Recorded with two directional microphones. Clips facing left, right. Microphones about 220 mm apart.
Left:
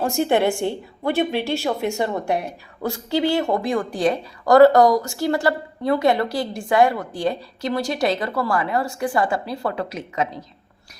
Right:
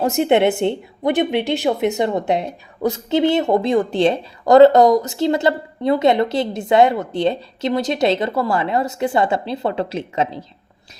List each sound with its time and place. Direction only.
0.0 s a woman's voice: 20° right (ahead or behind)